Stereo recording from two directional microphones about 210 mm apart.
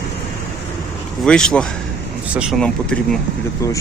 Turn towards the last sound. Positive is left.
turn(degrees=15)  # may be behind; listen again after turning